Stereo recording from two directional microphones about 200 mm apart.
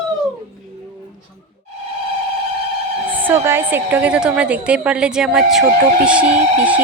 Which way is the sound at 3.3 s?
10° right (ahead or behind).